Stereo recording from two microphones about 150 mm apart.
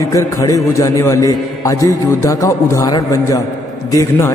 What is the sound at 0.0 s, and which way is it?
A man's voice, 20° left (ahead or behind).